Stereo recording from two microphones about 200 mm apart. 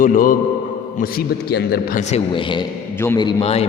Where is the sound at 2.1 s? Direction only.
25° left (ahead or behind).